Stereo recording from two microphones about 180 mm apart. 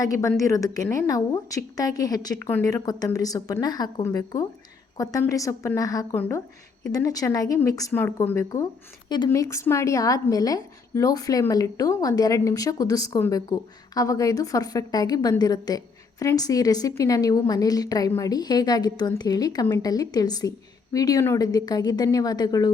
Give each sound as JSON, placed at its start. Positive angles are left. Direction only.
{"t": 0.0, "sound": "a woman's voice", "side_deg": 20}